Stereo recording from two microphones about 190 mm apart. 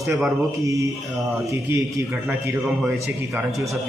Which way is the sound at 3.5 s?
15° right (ahead or behind).